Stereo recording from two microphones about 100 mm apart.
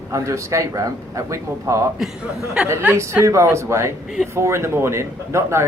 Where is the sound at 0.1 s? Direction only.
30° right (ahead or behind).